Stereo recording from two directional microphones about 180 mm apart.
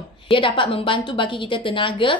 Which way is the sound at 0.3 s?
30° left (ahead or behind).